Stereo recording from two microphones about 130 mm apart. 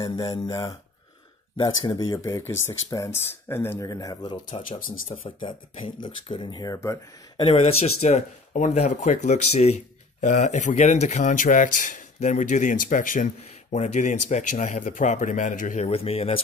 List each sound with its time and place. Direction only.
0.0 s speech: 30° left (ahead or behind)
4.6 s speech: 90° left
5.4 s speech: 40° left (ahead or behind); by 7.4 s 25° left (ahead or behind)
7.4 s a man's voice: 50° left (ahead or behind); by 15.9 s 80° left
15.9 s speech: 50° left (ahead or behind)